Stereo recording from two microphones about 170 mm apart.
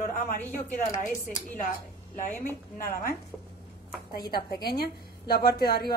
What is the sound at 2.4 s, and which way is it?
Speech, 55° left (ahead or behind).